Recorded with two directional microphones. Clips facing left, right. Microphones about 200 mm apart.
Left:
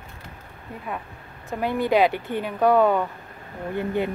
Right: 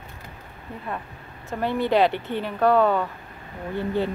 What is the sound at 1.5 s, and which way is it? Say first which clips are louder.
Speech: even; 15° left (ahead or behind).